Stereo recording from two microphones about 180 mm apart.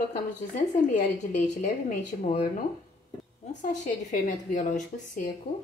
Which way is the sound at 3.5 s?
40° left (ahead or behind).